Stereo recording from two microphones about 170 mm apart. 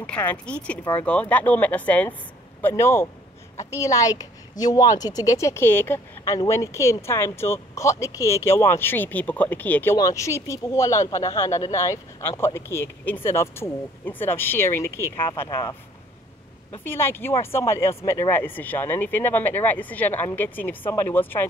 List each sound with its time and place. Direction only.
0.0 s a woman's voice: 10° left (ahead or behind)
15.4 s speech: 25° left (ahead or behind)
16.8 s a woman's voice: 15° left (ahead or behind)